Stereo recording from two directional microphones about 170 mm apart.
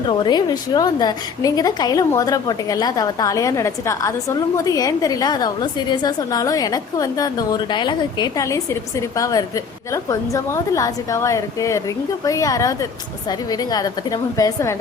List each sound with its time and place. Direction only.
0.1 s a woman's voice: 25° left (ahead or behind)